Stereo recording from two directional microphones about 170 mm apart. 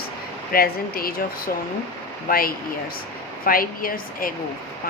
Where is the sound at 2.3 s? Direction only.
60° left (ahead or behind).